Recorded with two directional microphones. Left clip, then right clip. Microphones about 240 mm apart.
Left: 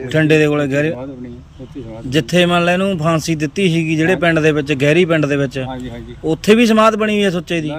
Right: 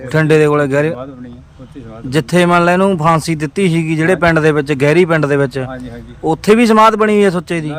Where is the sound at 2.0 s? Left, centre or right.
Centre.